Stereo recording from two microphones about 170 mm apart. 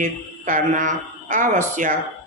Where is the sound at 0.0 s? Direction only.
50° right (ahead or behind).